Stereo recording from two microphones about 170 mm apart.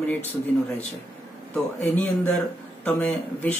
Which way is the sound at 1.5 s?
10° left (ahead or behind).